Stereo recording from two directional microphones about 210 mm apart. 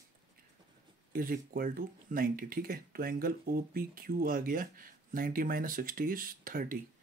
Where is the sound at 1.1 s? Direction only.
45° right (ahead or behind).